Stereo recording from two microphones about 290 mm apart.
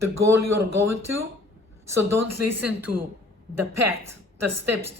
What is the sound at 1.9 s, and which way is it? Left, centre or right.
Speech, centre.